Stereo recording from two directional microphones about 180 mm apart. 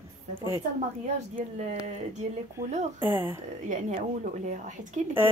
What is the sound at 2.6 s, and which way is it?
Speech, 20° right (ahead or behind).